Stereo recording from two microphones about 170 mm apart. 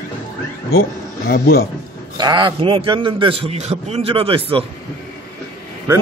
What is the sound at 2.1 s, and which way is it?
A man's voice, 25° right (ahead or behind).